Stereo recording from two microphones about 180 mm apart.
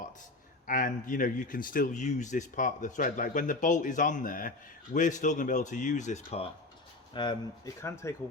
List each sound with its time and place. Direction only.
0.7 s speech: 45° left (ahead or behind)
7.1 s speech: 25° left (ahead or behind)